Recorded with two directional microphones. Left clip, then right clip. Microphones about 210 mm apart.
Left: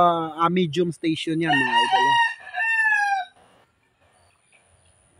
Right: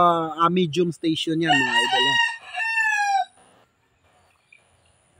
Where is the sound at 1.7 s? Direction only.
35° right (ahead or behind).